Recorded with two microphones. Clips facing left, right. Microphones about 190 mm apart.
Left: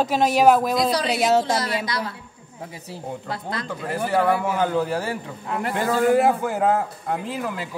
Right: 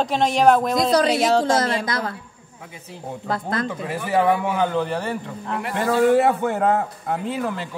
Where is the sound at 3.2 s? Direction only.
50° right (ahead or behind).